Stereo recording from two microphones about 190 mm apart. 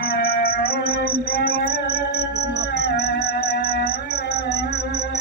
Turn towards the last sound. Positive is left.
turn(degrees=60)  # may be behind; listen again after turning